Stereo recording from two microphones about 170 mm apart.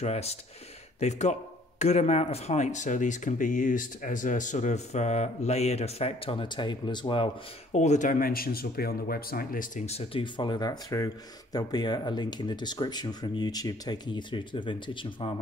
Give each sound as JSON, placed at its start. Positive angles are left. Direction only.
{"t": 0.0, "sound": "speech", "side_deg": 40}
{"t": 7.7, "sound": "speech", "side_deg": 45}